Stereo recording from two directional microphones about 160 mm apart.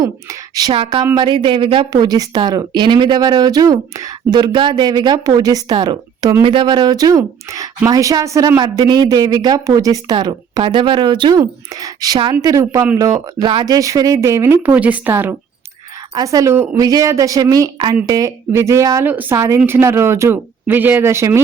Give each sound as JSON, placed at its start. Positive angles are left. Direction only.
{"t": 0.0, "sound": "speech", "side_deg": -25}
{"t": 0.7, "sound": "speech", "side_deg": -35}